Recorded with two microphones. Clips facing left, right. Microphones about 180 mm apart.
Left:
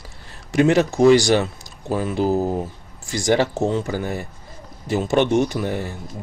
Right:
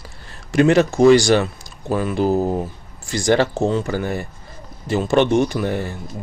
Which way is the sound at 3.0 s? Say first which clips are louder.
Right 2 dB; 20° left (ahead or behind).